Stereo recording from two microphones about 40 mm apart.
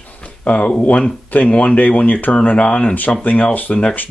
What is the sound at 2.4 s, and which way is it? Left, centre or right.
Speech, left.